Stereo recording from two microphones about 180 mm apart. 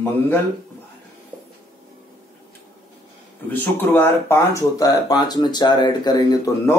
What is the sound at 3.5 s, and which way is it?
Speech, 10° left (ahead or behind).